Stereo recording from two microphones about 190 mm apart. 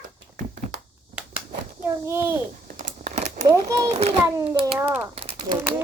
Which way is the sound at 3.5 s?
15° right (ahead or behind).